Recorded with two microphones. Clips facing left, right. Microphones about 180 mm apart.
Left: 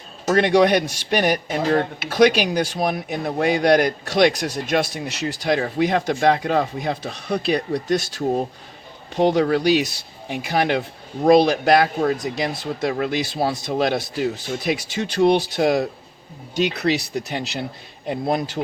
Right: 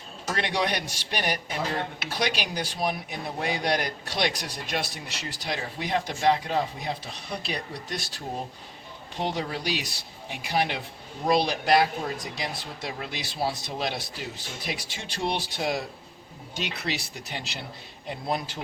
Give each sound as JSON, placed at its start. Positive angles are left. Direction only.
{"t": 0.3, "sound": "speech", "side_deg": 50}
{"t": 4.7, "sound": "speech", "side_deg": 75}
{"t": 5.3, "sound": "speech", "side_deg": 60}
{"t": 6.1, "sound": "speech", "side_deg": 60}
{"t": 9.4, "sound": "speech", "side_deg": 65}
{"t": 15.2, "sound": "speech", "side_deg": 45}
{"t": 17.2, "sound": "speech", "side_deg": 40}